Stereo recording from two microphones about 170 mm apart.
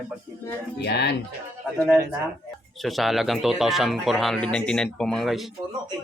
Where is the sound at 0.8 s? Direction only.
75° left (ahead or behind).